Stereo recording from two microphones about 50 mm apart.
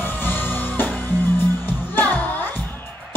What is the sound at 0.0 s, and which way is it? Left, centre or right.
Music, left.